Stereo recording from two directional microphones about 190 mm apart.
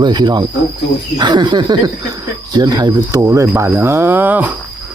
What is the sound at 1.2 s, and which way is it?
Speech, 25° right (ahead or behind).